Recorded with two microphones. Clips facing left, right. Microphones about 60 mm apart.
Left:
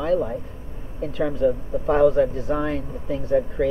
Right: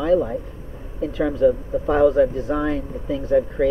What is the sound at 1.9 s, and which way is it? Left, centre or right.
Speech, centre.